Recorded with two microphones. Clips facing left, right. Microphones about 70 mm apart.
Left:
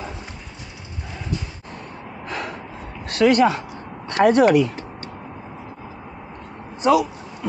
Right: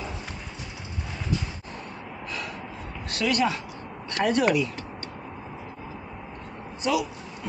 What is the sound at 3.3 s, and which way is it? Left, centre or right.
Speech, left.